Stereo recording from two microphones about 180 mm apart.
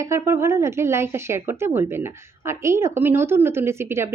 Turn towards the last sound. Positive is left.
turn(degrees=-15)  # may be behind; listen again after turning